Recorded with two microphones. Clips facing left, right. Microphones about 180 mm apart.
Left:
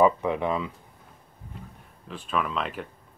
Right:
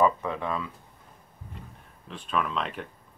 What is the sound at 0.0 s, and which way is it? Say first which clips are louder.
Speech: left 3 dB; 15° left (ahead or behind).